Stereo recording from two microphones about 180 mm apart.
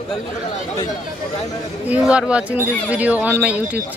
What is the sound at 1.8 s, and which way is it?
Speech, 5° right (ahead or behind).